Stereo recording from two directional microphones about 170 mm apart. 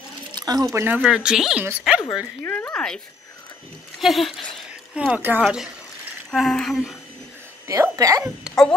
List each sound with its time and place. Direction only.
0.3 s squish: 25° right (ahead or behind)
0.7 s speech: 10° right (ahead or behind)
2.4 s speech: 10° left (ahead or behind)
4.0 s speech: centre (ahead or behind)
7.6 s speech: 20° right (ahead or behind)
8.5 s speech: 5° left (ahead or behind)